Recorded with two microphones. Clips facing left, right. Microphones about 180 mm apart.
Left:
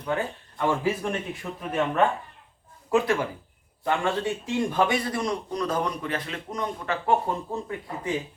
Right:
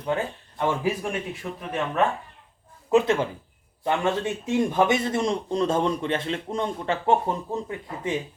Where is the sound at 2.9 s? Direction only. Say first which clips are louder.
Right 3 dB; 20° right (ahead or behind).